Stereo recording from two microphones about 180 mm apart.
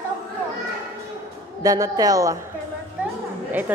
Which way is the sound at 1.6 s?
20° right (ahead or behind).